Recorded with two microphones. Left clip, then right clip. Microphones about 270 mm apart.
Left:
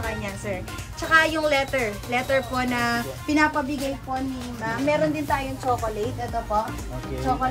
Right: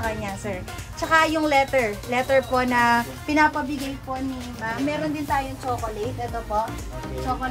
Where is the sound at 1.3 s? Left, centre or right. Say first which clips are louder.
Right 3 dB; right.